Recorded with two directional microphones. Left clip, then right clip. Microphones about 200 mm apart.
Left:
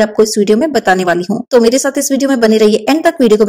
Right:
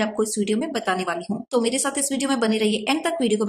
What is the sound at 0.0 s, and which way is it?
A woman's voice, 30° left (ahead or behind).